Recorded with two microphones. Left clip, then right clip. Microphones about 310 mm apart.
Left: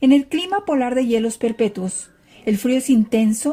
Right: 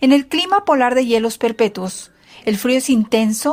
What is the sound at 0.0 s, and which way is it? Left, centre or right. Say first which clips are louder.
Speech: right 2 dB; right.